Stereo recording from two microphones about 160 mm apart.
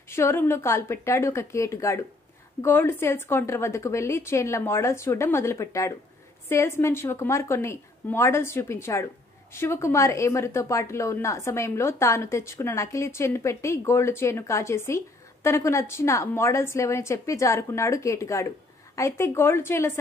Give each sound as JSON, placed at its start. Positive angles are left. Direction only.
{"t": 0.1, "sound": "a woman's voice", "side_deg": 15}